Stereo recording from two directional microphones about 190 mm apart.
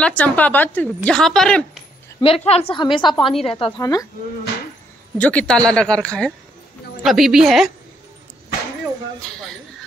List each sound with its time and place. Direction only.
0.0 s a woman's voice: 10° left (ahead or behind)
2.2 s a woman's voice: 30° left (ahead or behind)
5.1 s a man's voice: 5° left (ahead or behind)